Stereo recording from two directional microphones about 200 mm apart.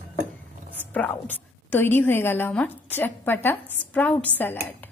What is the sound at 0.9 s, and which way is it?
A woman's voice, 10° left (ahead or behind).